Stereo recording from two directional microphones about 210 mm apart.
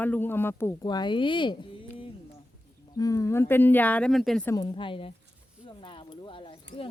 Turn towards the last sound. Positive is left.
turn(degrees=25)  # may be behind; listen again after turning